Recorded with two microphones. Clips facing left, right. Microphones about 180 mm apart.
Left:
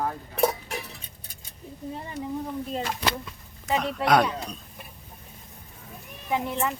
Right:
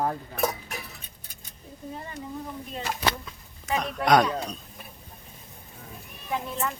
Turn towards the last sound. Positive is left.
turn(degrees=15)  # may be behind; listen again after turning